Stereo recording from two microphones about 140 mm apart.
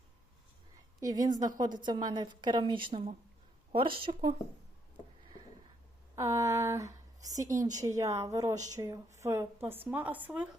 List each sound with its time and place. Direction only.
0.9 s a woman's voice: 25° right (ahead or behind)
6.1 s a woman's voice: 20° right (ahead or behind)